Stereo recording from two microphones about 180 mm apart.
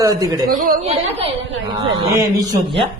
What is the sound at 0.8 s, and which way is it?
Speech, 35° right (ahead or behind).